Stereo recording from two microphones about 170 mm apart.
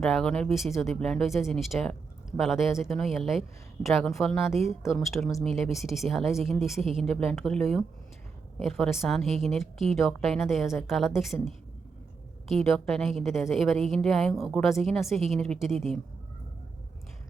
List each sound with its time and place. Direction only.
0.0 s speech: 5° left (ahead or behind)
12.5 s speech: centre (ahead or behind)